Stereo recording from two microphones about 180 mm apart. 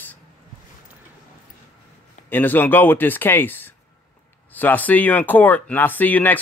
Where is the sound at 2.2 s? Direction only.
10° left (ahead or behind).